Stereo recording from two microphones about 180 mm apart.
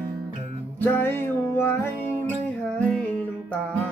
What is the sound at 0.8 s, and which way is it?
Music, 10° left (ahead or behind).